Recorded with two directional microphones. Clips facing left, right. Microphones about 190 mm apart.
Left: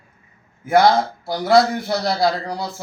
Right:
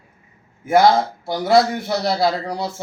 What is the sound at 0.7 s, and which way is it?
Speech, 25° right (ahead or behind).